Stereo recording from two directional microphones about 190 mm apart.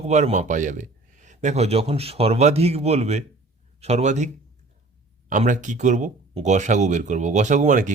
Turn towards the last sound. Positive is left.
turn(degrees=-40)  # may be behind; listen again after turning